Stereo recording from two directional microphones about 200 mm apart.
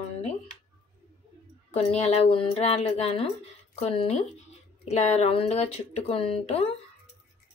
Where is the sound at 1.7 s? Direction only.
30° left (ahead or behind).